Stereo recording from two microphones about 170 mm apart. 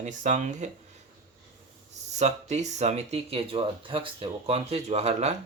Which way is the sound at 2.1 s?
40° right (ahead or behind).